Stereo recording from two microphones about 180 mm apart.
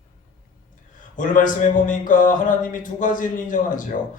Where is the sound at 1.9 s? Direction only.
45° left (ahead or behind).